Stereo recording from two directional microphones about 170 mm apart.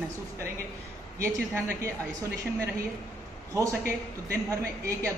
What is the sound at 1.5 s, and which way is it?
Speech, 15° right (ahead or behind).